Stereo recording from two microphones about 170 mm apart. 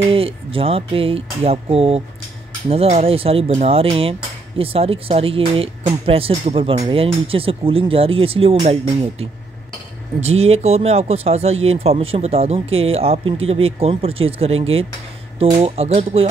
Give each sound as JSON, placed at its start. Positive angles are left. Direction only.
{"t": 0.1, "sound": "speech", "side_deg": -35}
{"t": 10.2, "sound": "speech", "side_deg": -40}